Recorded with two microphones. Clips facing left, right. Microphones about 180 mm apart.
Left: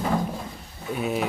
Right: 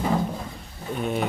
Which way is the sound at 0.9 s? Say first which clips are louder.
Even; 5° left (ahead or behind).